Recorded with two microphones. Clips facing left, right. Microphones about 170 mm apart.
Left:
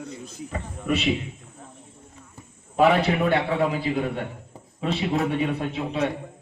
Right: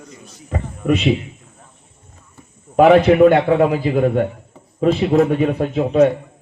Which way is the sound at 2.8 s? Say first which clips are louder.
Right 10 dB; 50° right (ahead or behind).